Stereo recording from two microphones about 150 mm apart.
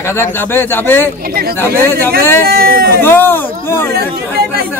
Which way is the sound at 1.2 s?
90° right.